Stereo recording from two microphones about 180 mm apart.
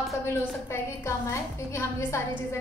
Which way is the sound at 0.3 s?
15° left (ahead or behind).